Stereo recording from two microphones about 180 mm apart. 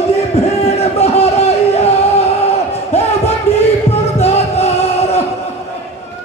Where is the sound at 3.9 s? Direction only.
35° left (ahead or behind).